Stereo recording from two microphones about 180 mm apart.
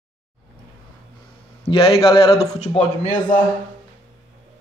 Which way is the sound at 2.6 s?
40° left (ahead or behind).